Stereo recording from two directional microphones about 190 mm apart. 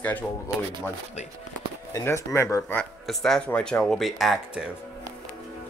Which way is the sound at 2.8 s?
Centre (ahead or behind).